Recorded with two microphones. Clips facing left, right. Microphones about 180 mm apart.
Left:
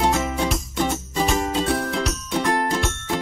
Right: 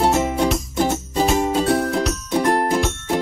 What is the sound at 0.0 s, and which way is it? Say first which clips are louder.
Music: right 4 dB; 30° right (ahead or behind).